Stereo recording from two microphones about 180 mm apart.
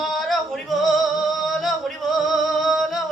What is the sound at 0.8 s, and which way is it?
Music, centre (ahead or behind).